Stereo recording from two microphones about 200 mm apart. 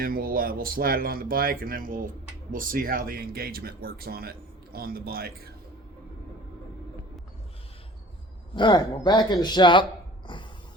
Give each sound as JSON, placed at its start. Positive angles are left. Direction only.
{"t": 0.0, "sound": "speech", "side_deg": -45}
{"t": 8.5, "sound": "a man's voice", "side_deg": 20}